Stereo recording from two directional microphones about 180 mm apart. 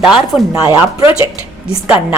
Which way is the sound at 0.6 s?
20° right (ahead or behind).